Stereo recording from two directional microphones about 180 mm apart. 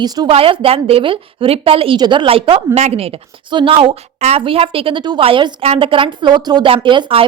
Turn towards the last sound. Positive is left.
turn(degrees=-30)  # may be behind; listen again after turning